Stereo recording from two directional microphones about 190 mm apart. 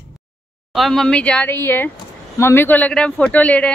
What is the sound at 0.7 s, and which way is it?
Speech, centre (ahead or behind).